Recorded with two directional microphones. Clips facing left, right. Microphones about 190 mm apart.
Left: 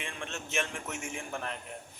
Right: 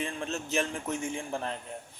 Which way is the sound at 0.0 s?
35° right (ahead or behind).